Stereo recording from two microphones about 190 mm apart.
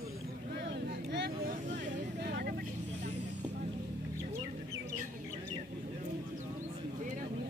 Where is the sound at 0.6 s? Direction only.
65° right (ahead or behind).